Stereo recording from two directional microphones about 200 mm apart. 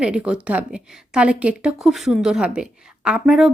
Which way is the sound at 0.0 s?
5° right (ahead or behind).